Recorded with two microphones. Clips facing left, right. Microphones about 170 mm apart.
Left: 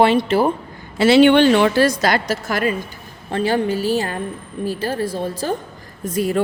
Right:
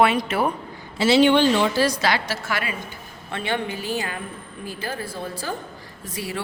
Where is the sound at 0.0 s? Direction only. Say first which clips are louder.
Left 5 dB; 30° left (ahead or behind).